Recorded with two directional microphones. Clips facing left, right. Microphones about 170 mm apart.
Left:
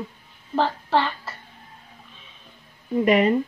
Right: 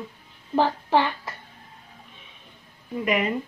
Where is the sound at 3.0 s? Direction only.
35° left (ahead or behind).